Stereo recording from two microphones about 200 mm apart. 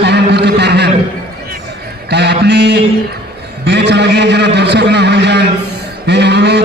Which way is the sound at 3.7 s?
60° right (ahead or behind).